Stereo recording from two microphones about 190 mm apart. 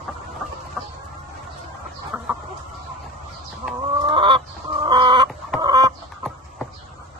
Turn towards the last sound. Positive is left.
turn(degrees=-20)  # may be behind; listen again after turning